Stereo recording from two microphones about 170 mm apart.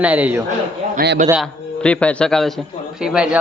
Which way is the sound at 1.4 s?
5° left (ahead or behind).